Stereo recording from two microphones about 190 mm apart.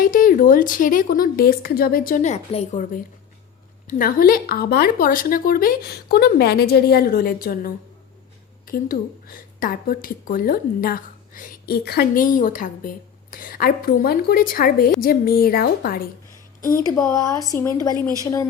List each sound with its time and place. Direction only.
0.0 s a woman's voice: 45° left (ahead or behind)
3.8 s a woman's voice: 50° left (ahead or behind)
16.7 s speech: 15° left (ahead or behind)